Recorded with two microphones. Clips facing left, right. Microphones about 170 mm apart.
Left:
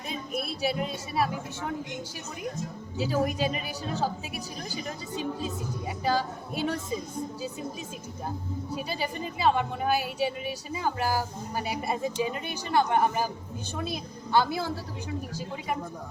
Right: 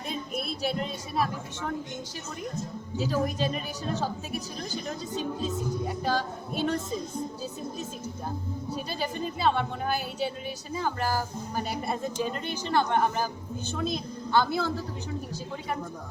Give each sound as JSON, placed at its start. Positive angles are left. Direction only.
{"t": 0.3, "sound": "a woman's voice", "side_deg": 5}
{"t": 3.0, "sound": "a woman's voice", "side_deg": 10}
{"t": 4.7, "sound": "a woman's voice", "side_deg": 10}
{"t": 8.7, "sound": "a woman's voice", "side_deg": 10}